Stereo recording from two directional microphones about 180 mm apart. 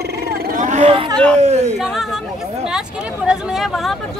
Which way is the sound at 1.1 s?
5° left (ahead or behind).